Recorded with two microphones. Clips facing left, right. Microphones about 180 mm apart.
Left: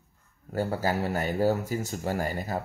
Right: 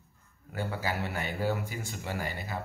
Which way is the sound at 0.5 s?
40° left (ahead or behind).